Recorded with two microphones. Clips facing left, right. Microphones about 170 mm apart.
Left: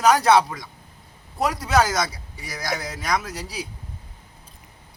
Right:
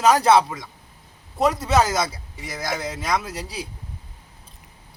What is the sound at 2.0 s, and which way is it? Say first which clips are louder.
Speech: right 2 dB; 25° right (ahead or behind).